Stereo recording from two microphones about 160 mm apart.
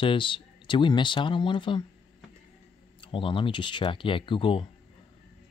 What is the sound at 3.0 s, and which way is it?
Speech, 35° left (ahead or behind).